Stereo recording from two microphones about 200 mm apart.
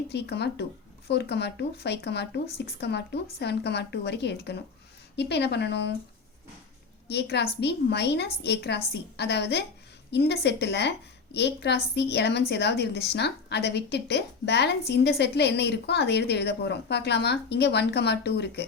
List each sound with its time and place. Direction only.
0.1 s a woman's voice: 55° left (ahead or behind)
7.1 s a woman's voice: 55° left (ahead or behind)